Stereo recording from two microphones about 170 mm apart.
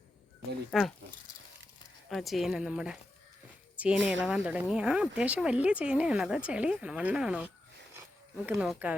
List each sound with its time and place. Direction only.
0.7 s speech: centre (ahead or behind)
2.0 s speech: centre (ahead or behind)
8.4 s speech: centre (ahead or behind)